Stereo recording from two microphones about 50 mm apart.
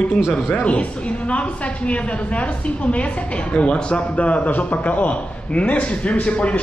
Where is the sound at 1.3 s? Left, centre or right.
Left.